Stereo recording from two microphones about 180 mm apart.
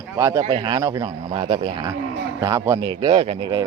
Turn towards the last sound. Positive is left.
turn(degrees=-30)  # may be behind; listen again after turning